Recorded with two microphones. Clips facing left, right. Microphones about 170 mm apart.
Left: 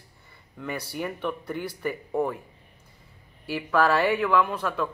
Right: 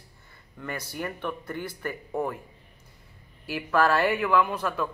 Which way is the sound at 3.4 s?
5° right (ahead or behind).